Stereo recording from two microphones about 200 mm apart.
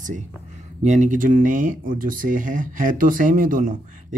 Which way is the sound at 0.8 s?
35° right (ahead or behind).